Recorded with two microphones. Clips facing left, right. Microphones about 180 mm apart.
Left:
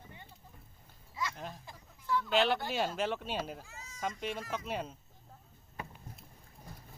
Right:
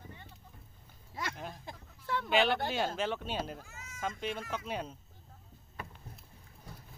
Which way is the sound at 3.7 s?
30° left (ahead or behind).